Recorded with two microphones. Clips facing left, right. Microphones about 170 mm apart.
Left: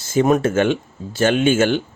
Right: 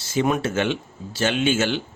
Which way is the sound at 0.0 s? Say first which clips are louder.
Left 6 dB; 45° left (ahead or behind).